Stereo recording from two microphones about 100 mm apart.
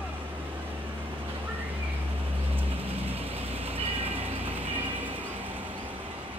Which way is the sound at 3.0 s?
80° right.